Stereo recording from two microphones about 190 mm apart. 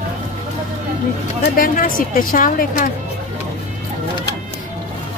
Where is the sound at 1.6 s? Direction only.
45° left (ahead or behind).